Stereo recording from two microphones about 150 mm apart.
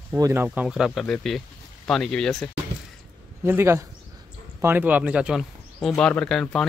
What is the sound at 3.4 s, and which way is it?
Speech, 15° right (ahead or behind).